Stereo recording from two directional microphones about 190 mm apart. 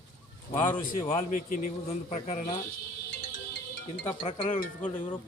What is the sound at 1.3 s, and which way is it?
Speech, 45° left (ahead or behind).